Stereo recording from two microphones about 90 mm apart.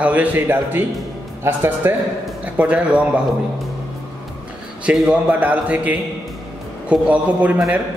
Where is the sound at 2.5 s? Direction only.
15° right (ahead or behind).